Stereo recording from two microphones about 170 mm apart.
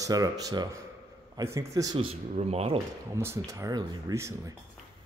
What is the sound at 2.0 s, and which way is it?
Speech, 35° right (ahead or behind).